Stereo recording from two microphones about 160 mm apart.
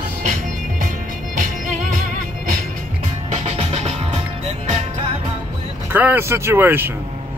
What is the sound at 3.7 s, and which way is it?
Music, 45° right (ahead or behind).